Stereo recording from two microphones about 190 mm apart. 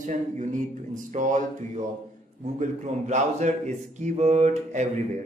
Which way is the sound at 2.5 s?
40° right (ahead or behind).